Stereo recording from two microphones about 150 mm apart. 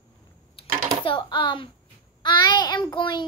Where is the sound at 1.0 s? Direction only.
30° left (ahead or behind).